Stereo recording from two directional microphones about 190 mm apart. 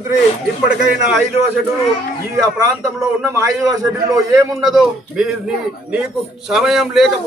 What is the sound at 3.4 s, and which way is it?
A man's voice, 15° right (ahead or behind).